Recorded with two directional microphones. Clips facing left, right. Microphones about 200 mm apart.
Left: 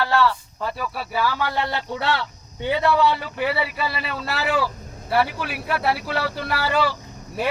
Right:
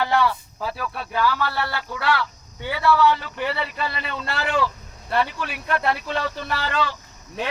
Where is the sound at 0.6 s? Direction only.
Centre (ahead or behind).